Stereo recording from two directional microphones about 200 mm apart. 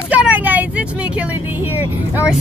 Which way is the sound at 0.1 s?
5° right (ahead or behind).